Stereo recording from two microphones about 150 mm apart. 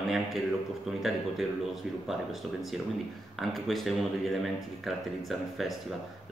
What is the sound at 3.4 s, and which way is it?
Speech, centre (ahead or behind).